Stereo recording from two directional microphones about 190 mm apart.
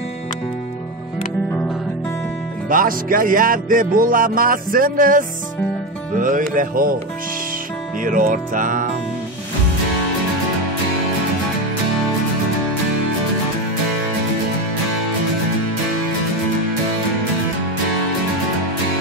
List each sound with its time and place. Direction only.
2.7 s music: 45° right (ahead or behind)
8.0 s music: 45° right (ahead or behind)